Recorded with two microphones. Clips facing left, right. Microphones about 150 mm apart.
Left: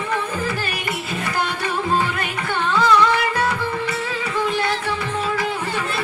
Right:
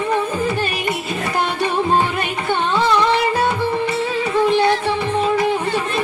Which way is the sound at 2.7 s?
25° right (ahead or behind).